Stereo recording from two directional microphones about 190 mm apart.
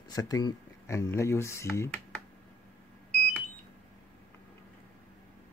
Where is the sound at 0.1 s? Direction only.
20° left (ahead or behind).